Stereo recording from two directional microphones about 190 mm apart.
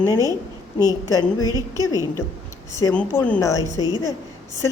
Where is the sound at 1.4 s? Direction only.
20° right (ahead or behind).